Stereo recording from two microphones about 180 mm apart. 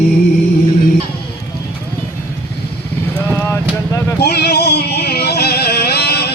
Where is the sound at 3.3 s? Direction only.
15° left (ahead or behind).